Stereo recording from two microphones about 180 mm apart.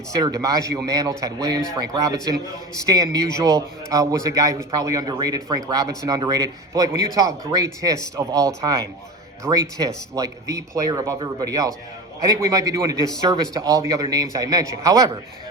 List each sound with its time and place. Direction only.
0.2 s a man's voice: 20° right (ahead or behind)